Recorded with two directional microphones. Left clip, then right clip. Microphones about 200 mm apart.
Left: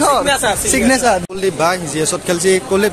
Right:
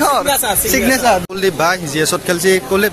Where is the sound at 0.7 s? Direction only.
15° left (ahead or behind).